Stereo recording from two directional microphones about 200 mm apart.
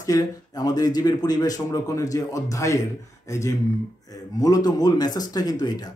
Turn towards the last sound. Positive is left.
turn(degrees=20)  # may be behind; listen again after turning